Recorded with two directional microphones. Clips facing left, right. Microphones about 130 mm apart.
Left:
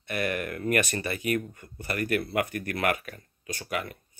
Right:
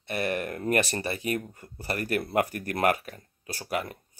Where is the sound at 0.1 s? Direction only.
35° right (ahead or behind).